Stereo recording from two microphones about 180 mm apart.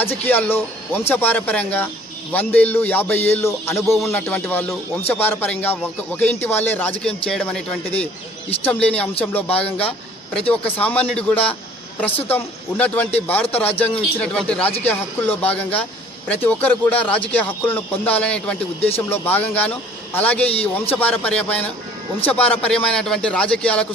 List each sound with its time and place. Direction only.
0.3 s music: 10° left (ahead or behind)
7.0 s a man's voice: 5° left (ahead or behind)
8.6 s music: 10° left (ahead or behind)
14.2 s a man's voice: 5° left (ahead or behind)
14.8 s music: 10° left (ahead or behind)
22.3 s a man's voice: 10° left (ahead or behind)